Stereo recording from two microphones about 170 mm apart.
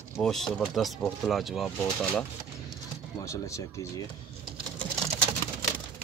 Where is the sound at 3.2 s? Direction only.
20° left (ahead or behind).